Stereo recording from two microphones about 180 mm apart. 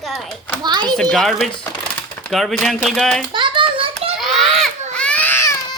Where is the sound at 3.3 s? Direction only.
25° right (ahead or behind).